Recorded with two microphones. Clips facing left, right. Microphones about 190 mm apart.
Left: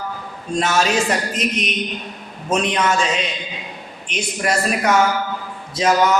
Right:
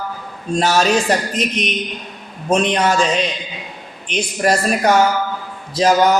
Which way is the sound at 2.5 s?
35° right (ahead or behind).